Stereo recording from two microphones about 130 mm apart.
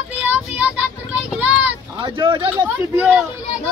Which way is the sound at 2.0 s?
40° right (ahead or behind).